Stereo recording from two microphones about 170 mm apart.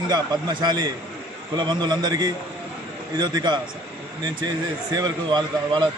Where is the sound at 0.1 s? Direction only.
25° right (ahead or behind).